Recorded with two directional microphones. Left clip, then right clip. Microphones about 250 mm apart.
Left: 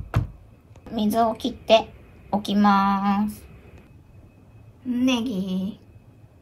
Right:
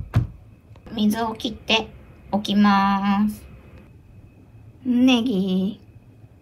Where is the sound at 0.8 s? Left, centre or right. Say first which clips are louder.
Left 3 dB; centre.